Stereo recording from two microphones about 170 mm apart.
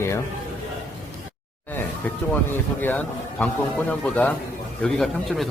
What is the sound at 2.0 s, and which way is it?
A man's voice, 10° left (ahead or behind).